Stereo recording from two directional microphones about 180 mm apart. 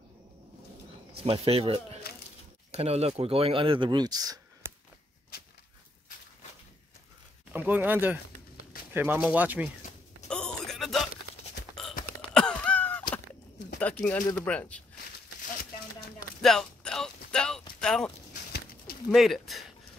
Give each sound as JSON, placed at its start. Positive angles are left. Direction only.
{"t": 1.2, "sound": "speech", "side_deg": -30}
{"t": 7.5, "sound": "a man's voice", "side_deg": -10}
{"t": 10.2, "sound": "a sound", "side_deg": 5}
{"t": 13.7, "sound": "pigeon", "side_deg": 5}
{"t": 14.3, "sound": "speech", "side_deg": 10}
{"t": 16.4, "sound": "a sound", "side_deg": 5}
{"t": 19.1, "sound": "speech", "side_deg": 0}